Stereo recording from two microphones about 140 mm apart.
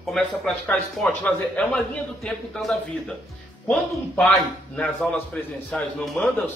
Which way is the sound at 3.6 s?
5° left (ahead or behind).